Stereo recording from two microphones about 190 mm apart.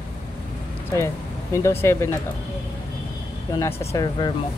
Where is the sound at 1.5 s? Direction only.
15° left (ahead or behind).